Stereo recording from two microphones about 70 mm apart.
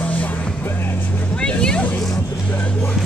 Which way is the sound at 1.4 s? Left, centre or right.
Centre.